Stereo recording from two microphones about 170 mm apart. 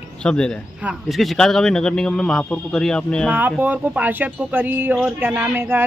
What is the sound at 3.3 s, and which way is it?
A woman's voice, 10° right (ahead or behind).